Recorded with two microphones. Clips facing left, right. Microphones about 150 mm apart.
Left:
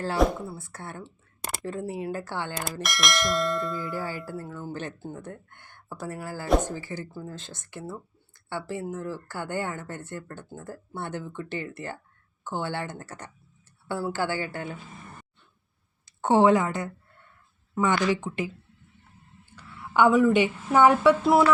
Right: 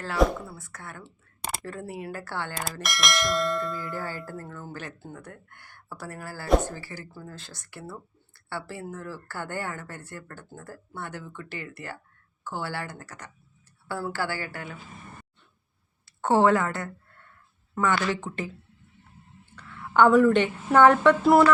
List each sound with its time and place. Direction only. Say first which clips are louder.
0.4 s speech: left 4 dB; 30° left (ahead or behind)
2.8 s speech: even; centre (ahead or behind)
4.3 s speech: left 3 dB; 15° left (ahead or behind)
4.7 s speech: left 4 dB; 25° left (ahead or behind)
16.0 s a woman's voice: left 1 dB; 15° left (ahead or behind)
19.5 s speech: right 2 dB; 5° left (ahead or behind)